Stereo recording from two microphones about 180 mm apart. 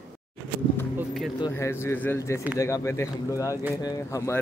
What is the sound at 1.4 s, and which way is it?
Speech, 15° left (ahead or behind).